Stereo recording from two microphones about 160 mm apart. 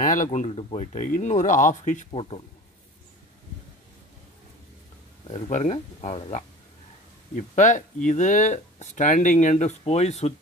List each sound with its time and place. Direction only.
0.0 s speech: 55° left (ahead or behind)
2.0 s speech: 35° left (ahead or behind)
5.3 s speech: 45° left (ahead or behind)